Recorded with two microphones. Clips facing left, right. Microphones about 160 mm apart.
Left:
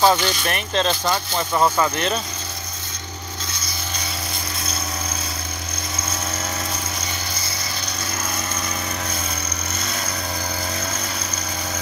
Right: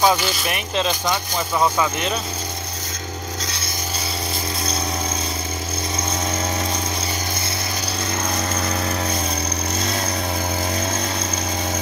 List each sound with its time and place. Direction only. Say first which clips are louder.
0.0 s speech: left 1 dB; 5° right (ahead or behind)
8.4 s lawn mower: right 5 dB; 35° right (ahead or behind)
9.8 s vehicle: right 5 dB; 30° right (ahead or behind)